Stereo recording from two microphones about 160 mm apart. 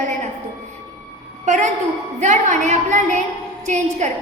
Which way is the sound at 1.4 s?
50° right (ahead or behind).